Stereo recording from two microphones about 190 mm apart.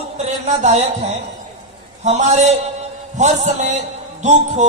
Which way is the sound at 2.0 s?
35° right (ahead or behind).